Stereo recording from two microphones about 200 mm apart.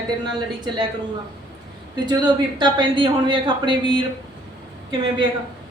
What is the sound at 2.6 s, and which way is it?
A woman's voice, 20° right (ahead or behind).